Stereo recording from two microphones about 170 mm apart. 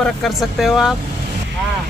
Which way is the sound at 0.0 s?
Centre (ahead or behind).